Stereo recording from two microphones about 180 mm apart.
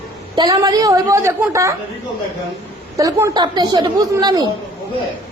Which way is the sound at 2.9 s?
20° right (ahead or behind).